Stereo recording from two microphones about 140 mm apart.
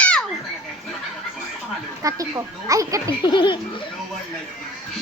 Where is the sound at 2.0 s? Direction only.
25° right (ahead or behind).